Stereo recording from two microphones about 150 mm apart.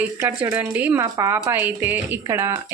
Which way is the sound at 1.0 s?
20° right (ahead or behind).